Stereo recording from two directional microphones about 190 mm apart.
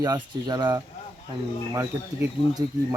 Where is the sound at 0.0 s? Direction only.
20° right (ahead or behind).